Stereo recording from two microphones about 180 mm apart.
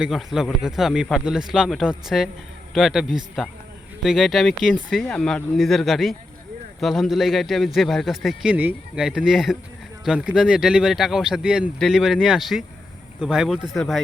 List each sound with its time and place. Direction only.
0.0 s a man's voice: centre (ahead or behind)